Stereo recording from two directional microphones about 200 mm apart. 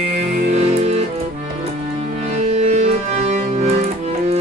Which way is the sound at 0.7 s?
35° right (ahead or behind).